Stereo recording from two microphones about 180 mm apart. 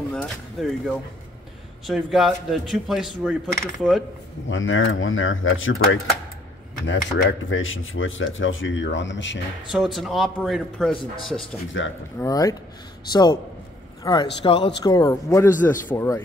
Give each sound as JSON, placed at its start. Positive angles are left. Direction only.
{"t": 0.1, "sound": "a man's voice", "side_deg": 0}
{"t": 4.5, "sound": "speech", "side_deg": 90}
{"t": 9.9, "sound": "a man's voice", "side_deg": 0}
{"t": 11.7, "sound": "speech", "side_deg": 90}
{"t": 12.2, "sound": "speech", "side_deg": 20}